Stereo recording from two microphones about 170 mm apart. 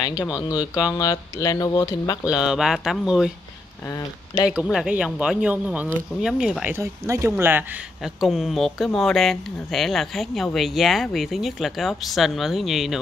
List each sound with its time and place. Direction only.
0.2 s speech: 20° left (ahead or behind)
2.2 s speech: 5° right (ahead or behind)
3.8 s speech: 20° left (ahead or behind)
4.5 s speech: 5° right (ahead or behind)